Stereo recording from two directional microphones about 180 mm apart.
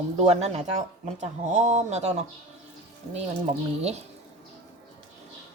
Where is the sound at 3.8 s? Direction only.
35° right (ahead or behind).